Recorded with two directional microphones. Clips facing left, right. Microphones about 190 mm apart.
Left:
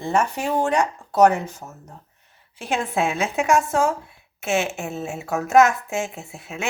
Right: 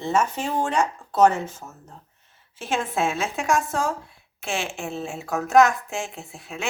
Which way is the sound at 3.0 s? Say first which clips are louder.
Left 3 dB; 15° left (ahead or behind).